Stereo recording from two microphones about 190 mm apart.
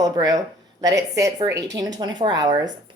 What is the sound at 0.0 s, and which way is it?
A woman's voice, 20° right (ahead or behind).